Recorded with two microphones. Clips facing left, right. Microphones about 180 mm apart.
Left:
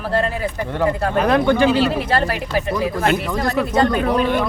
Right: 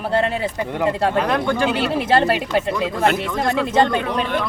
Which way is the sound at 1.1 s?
15° left (ahead or behind).